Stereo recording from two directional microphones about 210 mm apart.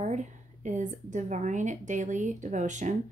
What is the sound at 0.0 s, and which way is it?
Speech, 35° right (ahead or behind).